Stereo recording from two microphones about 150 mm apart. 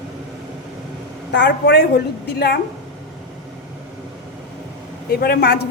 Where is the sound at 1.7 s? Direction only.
90° left.